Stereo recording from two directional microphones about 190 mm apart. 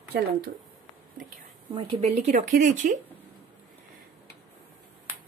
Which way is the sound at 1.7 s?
30° right (ahead or behind).